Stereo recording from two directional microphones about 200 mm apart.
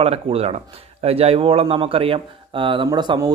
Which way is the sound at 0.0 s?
30° right (ahead or behind).